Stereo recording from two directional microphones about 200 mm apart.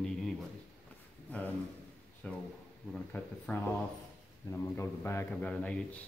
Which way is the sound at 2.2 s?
5° left (ahead or behind).